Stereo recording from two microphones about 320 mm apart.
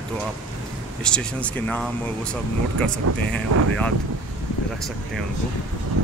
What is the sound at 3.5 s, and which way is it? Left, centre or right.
Speech, right.